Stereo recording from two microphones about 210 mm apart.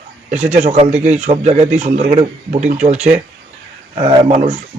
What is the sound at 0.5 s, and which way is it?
Speech, 30° right (ahead or behind).